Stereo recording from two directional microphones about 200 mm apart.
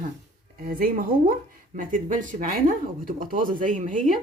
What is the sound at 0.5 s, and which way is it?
A woman's voice, 45° right (ahead or behind).